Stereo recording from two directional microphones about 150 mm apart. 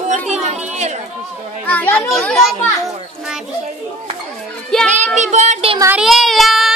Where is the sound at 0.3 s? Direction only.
50° right (ahead or behind).